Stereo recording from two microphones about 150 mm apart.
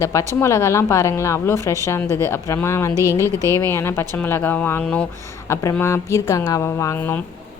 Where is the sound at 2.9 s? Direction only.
20° right (ahead or behind).